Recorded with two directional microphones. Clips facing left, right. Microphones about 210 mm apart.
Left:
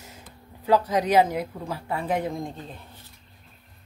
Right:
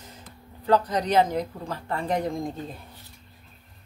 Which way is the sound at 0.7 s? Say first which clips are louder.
Left 1 dB; 10° left (ahead or behind).